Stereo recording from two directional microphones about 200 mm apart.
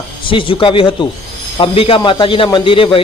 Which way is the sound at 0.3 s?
25° left (ahead or behind).